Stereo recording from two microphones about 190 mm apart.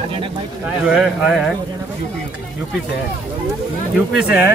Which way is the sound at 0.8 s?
Centre (ahead or behind).